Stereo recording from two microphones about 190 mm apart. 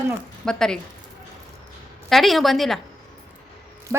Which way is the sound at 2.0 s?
Centre (ahead or behind).